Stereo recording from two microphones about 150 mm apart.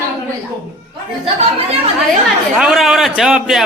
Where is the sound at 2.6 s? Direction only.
5° right (ahead or behind).